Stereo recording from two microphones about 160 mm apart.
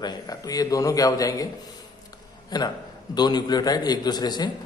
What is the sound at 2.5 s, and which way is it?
A man's voice, 25° left (ahead or behind).